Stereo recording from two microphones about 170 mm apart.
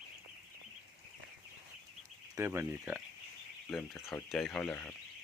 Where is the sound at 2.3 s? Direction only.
15° right (ahead or behind).